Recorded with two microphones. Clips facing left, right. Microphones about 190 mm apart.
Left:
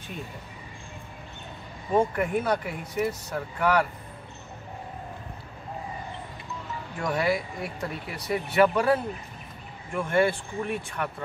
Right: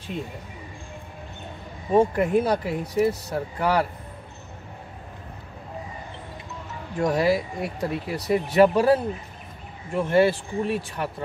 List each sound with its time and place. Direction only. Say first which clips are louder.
1.9 s speech: right 4 dB; 30° right (ahead or behind)
7.0 s speech: right 5 dB; 35° right (ahead or behind)